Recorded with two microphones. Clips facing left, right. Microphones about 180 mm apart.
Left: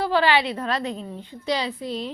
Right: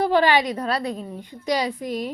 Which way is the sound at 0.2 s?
45° right (ahead or behind).